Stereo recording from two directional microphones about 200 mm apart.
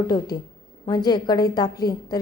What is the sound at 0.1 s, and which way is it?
A woman's voice, 20° left (ahead or behind).